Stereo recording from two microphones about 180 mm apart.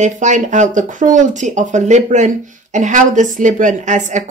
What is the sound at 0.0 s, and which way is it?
Speech, 40° right (ahead or behind).